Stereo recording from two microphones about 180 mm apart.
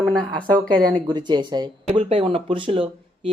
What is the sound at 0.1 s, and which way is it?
Speech, 20° right (ahead or behind).